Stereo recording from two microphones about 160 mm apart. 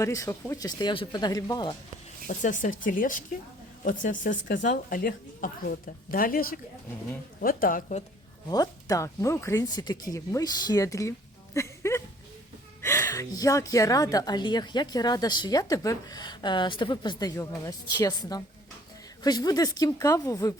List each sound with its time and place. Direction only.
0.0 s a woman's voice: 20° left (ahead or behind)
2.2 s a woman's voice: 55° left (ahead or behind)
4.7 s a woman's voice: 65° left (ahead or behind)
8.4 s a woman's voice: 25° left (ahead or behind)
11.5 s a sound: 15° left (ahead or behind)
12.8 s a woman's voice: 15° left (ahead or behind)